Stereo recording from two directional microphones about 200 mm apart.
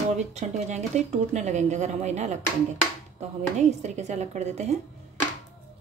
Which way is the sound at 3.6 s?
35° right (ahead or behind).